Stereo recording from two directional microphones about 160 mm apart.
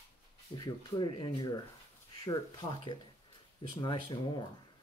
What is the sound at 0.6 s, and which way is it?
Speech, 30° left (ahead or behind).